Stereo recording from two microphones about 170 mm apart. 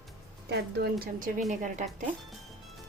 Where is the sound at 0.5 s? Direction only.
70° right (ahead or behind).